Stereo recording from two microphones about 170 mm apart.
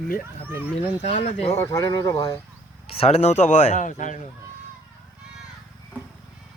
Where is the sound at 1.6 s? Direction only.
20° left (ahead or behind).